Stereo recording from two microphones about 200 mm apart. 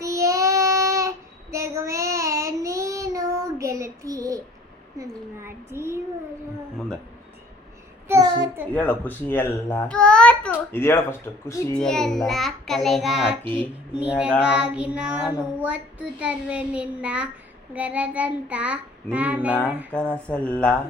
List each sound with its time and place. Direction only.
0.0 s child singing: 15° right (ahead or behind)
8.0 s child singing: 15° right (ahead or behind)
8.7 s a child's voice: 5° left (ahead or behind)
11.8 s child singing: 5° left (ahead or behind)
19.9 s child singing: 5° left (ahead or behind)